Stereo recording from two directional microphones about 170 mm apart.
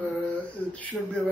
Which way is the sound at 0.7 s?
5° left (ahead or behind).